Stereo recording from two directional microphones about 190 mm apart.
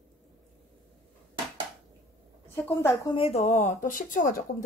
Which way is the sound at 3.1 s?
30° left (ahead or behind).